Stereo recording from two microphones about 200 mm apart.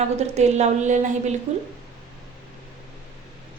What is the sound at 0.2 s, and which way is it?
A woman's voice, 35° right (ahead or behind).